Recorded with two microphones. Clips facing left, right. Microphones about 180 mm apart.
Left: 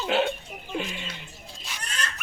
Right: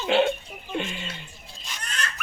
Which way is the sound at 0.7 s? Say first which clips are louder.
Right 2 dB; centre (ahead or behind).